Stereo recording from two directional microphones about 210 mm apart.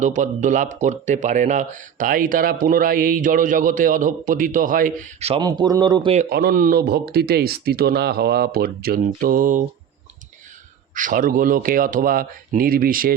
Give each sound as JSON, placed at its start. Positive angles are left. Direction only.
{"t": 0.0, "sound": "speech", "side_deg": -35}
{"t": 6.3, "sound": "speech", "side_deg": -45}
{"t": 10.9, "sound": "speech", "side_deg": -40}